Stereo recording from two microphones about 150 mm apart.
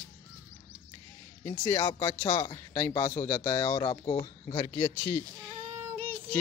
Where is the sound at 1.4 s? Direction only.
25° left (ahead or behind).